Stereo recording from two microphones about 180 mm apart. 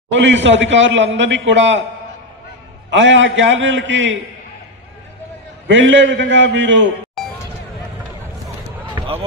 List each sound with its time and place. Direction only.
0.1 s a man's voice: 90° right
2.9 s a man's voice: 90° right
5.7 s a man's voice: 90° right
9.0 s run: 20° right (ahead or behind)